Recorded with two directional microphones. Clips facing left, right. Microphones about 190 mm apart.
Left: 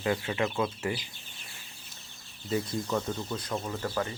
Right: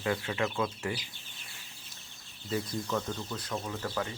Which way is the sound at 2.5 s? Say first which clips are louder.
Left 3 dB; 25° left (ahead or behind).